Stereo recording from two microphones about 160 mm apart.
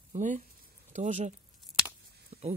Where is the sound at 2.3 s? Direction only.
45° right (ahead or behind).